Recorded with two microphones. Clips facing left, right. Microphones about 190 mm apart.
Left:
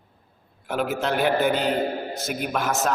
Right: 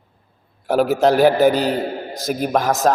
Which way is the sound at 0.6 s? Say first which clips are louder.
Right 10 dB; 40° right (ahead or behind).